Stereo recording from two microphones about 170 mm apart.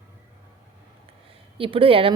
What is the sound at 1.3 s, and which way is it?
Speech, 30° right (ahead or behind).